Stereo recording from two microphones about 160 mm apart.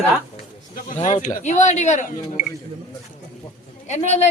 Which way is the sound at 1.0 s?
50° left (ahead or behind).